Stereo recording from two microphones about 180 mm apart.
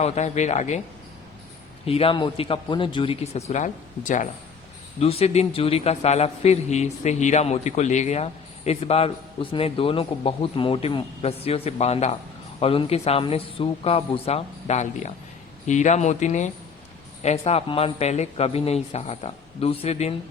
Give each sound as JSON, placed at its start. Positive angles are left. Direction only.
{"t": 0.0, "sound": "a man's voice", "side_deg": 40}
{"t": 1.9, "sound": "a man's voice", "side_deg": 30}
{"t": 4.9, "sound": "a man's voice", "side_deg": 35}